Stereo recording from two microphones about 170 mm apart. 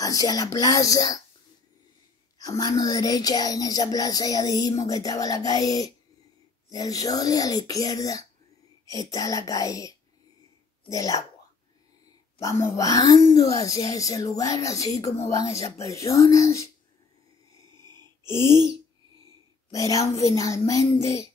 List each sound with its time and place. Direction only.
0.0 s speech: 20° left (ahead or behind)
2.3 s speech: 20° left (ahead or behind)
12.4 s speech: 20° left (ahead or behind)
18.4 s owl: 25° right (ahead or behind)
19.7 s speech: 20° left (ahead or behind)